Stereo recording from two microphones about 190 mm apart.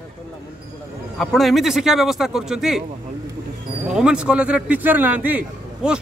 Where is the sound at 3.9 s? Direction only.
5° right (ahead or behind).